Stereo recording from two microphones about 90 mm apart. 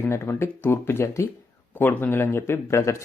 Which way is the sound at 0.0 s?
25° left (ahead or behind).